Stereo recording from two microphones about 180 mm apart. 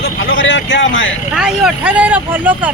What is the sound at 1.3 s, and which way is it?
Speech, 5° right (ahead or behind).